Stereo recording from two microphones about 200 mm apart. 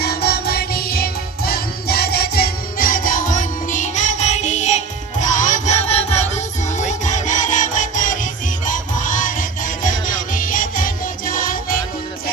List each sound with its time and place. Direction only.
0.0 s music: 55° left (ahead or behind)